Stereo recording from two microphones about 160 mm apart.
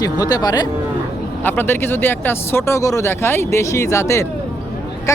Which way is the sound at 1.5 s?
15° left (ahead or behind).